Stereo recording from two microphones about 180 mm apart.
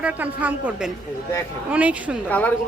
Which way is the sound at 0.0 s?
10° right (ahead or behind).